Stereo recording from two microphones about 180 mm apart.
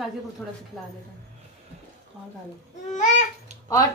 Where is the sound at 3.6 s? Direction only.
20° left (ahead or behind).